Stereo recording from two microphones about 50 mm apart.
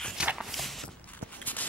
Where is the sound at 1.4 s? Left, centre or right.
Left.